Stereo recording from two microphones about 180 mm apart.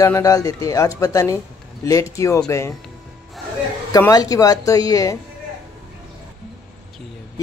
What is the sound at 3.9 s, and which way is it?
Speech, 20° left (ahead or behind).